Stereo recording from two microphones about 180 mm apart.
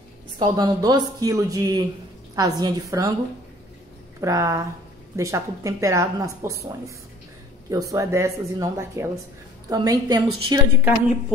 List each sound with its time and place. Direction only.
0.4 s speech: 25° right (ahead or behind)
4.2 s a woman's voice: 15° right (ahead or behind)
7.7 s a woman's voice: 20° right (ahead or behind)